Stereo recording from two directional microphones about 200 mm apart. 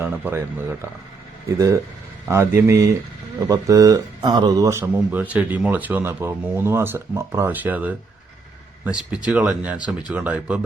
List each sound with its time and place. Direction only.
0.0 s speech: 10° right (ahead or behind)